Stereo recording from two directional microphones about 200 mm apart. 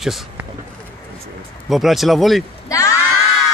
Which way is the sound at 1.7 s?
Centre (ahead or behind).